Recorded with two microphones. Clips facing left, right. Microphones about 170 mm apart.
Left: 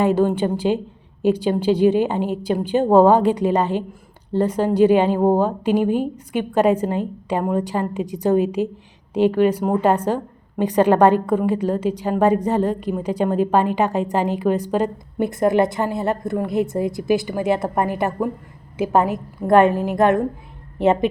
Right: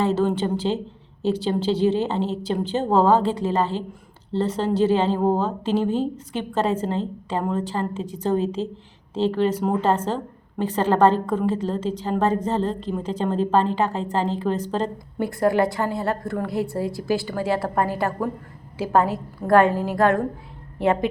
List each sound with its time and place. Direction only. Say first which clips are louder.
0.0 s a woman's voice: left 4 dB; 15° left (ahead or behind)